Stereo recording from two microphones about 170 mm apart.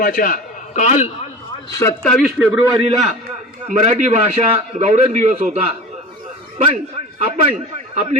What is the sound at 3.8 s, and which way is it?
A man's voice, 40° right (ahead or behind).